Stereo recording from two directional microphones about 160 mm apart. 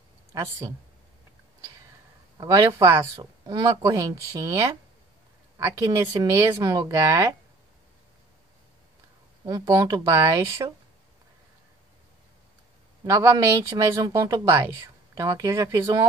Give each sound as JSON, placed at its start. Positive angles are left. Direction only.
{"t": 0.3, "sound": "speech", "side_deg": -20}
{"t": 2.3, "sound": "speech", "side_deg": -20}
{"t": 5.9, "sound": "speech", "side_deg": -15}
{"t": 9.4, "sound": "speech", "side_deg": -20}
{"t": 13.0, "sound": "speech", "side_deg": -20}